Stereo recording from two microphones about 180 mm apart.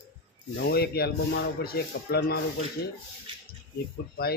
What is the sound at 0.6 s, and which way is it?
Speech, 65° left (ahead or behind).